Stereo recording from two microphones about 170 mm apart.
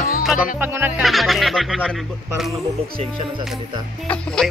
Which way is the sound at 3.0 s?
35° right (ahead or behind).